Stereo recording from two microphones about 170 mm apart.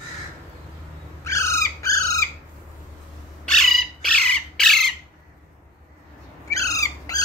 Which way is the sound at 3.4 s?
5° left (ahead or behind).